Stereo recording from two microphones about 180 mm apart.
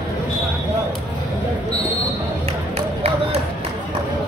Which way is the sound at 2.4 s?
35° right (ahead or behind).